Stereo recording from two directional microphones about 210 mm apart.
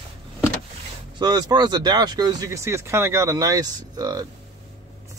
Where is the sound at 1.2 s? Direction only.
20° right (ahead or behind).